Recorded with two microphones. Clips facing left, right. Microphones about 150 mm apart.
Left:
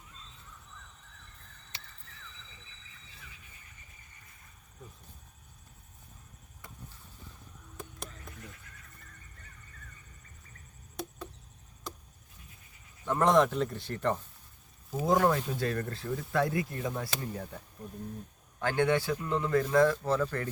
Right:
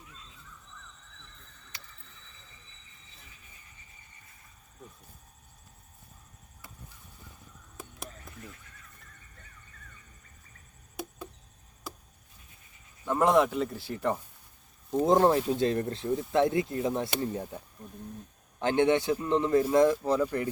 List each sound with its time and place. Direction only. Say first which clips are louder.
1.7 s chop: left 1 dB; 25° left (ahead or behind)
7.8 s a sound: even; 5° right (ahead or behind)
13.1 s speech: right 1 dB; 5° right (ahead or behind)
15.0 s speech: right 4 dB; 25° right (ahead or behind)
18.6 s speech: right 3 dB; 20° right (ahead or behind)